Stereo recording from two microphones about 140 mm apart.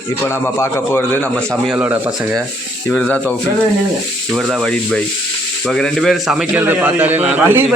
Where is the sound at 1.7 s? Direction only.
15° right (ahead or behind).